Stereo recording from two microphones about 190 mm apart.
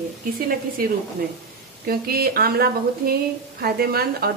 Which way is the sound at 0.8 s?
50° right (ahead or behind).